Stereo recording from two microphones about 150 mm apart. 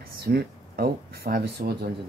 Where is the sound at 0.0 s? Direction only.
90° right.